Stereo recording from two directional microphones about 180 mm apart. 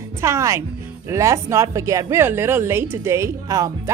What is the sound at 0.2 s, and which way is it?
A woman's voice, 15° right (ahead or behind).